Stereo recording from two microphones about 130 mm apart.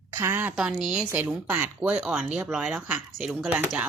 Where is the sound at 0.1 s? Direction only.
20° right (ahead or behind).